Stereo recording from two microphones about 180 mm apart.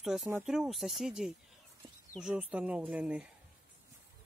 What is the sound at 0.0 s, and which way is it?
Speech, centre (ahead or behind).